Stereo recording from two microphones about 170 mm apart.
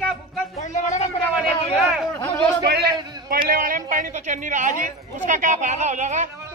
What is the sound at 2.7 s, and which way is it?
A man's voice, 65° right (ahead or behind).